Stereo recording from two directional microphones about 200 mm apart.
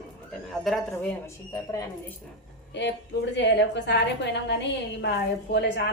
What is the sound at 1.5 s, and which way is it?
Speech, 15° left (ahead or behind).